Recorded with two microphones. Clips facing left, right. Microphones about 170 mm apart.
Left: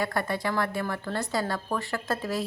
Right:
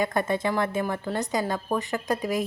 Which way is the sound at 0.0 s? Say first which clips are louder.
Right 4 dB; 20° right (ahead or behind).